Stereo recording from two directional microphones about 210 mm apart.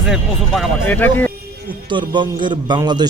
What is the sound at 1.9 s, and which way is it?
A man's voice, 20° right (ahead or behind).